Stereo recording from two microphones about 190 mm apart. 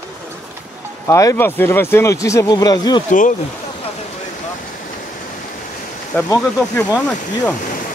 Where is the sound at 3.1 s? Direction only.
40° left (ahead or behind).